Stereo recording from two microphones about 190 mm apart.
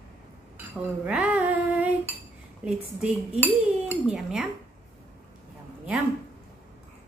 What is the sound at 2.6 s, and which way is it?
Cutlery, 5° right (ahead or behind).